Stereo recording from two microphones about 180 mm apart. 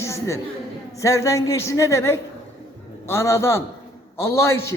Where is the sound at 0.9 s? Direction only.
15° left (ahead or behind).